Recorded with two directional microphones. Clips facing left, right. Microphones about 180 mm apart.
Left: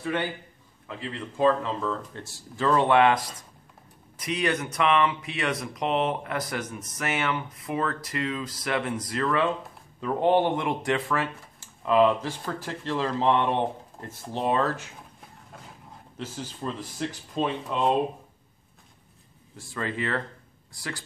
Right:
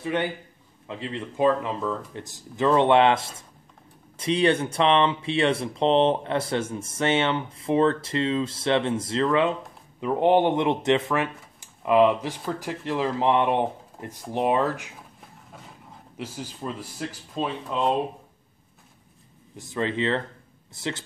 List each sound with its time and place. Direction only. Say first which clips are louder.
0.0 s speech: right 2 dB; 20° right (ahead or behind)
16.2 s speech: right 1 dB; 10° right (ahead or behind)
17.3 s speech: left 1 dB; centre (ahead or behind)
19.5 s speech: right 5 dB; 20° right (ahead or behind)